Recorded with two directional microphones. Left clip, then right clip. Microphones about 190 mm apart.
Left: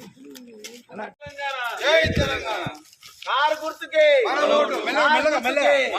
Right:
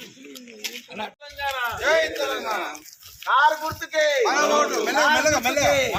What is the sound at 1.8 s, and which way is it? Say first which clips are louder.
A man's voice: left 3 dB; 15° left (ahead or behind).